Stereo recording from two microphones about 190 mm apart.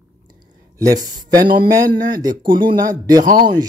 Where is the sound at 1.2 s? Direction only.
20° right (ahead or behind).